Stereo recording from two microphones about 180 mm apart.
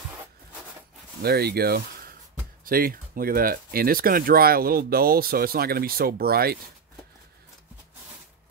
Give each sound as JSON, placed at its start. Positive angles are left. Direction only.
{"t": 1.2, "sound": "speech", "side_deg": -60}